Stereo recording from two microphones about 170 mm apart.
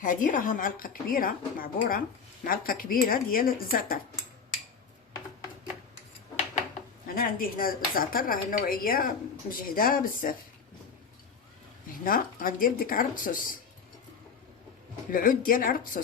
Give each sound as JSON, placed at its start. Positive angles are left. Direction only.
{"t": 0.0, "sound": "speech", "side_deg": 50}
{"t": 7.1, "sound": "speech", "side_deg": 55}
{"t": 12.0, "sound": "speech", "side_deg": 55}
{"t": 15.1, "sound": "speech", "side_deg": 55}